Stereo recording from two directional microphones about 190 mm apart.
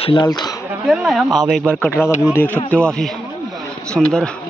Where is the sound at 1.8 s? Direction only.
10° left (ahead or behind).